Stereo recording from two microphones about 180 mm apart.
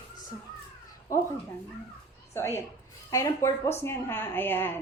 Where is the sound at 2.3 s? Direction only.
15° left (ahead or behind).